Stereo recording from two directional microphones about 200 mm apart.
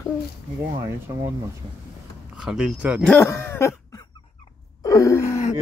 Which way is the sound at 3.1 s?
15° left (ahead or behind).